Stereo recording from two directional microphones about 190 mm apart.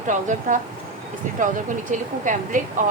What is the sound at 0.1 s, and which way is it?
Speech, 40° right (ahead or behind).